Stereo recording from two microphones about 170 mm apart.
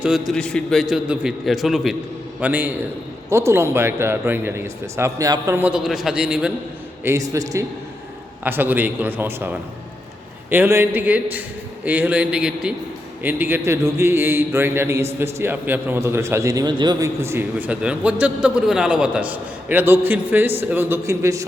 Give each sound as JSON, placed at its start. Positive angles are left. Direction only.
{"t": 0.0, "sound": "a man's voice", "side_deg": 0}
{"t": 7.0, "sound": "a man's voice", "side_deg": -20}